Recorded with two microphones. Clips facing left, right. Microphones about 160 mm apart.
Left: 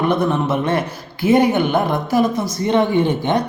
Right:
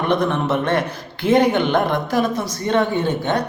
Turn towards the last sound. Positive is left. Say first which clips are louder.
# left 3 dB
turn(degrees=15)  # may be behind; listen again after turning